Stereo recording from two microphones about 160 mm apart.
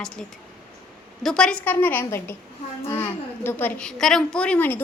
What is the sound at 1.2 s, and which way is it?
A woman's voice, 5° left (ahead or behind).